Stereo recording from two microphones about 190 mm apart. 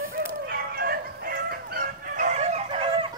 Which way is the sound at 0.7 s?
55° right (ahead or behind).